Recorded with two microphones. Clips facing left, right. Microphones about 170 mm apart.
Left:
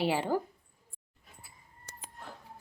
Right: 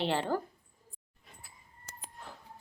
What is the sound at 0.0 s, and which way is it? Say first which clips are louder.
Speech: left 2 dB; 10° left (ahead or behind).